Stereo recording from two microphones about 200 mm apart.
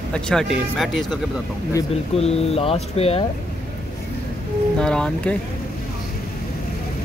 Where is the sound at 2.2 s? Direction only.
30° left (ahead or behind).